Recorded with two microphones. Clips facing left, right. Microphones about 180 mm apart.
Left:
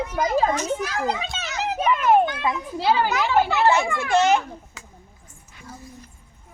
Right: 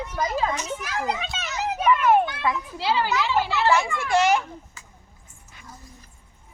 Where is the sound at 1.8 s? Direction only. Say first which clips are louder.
Even; 35° left (ahead or behind).